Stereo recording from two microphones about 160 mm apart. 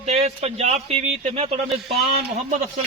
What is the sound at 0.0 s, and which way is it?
A man's voice, 40° right (ahead or behind).